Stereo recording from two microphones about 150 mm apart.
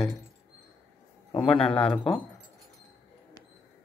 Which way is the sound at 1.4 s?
5° left (ahead or behind).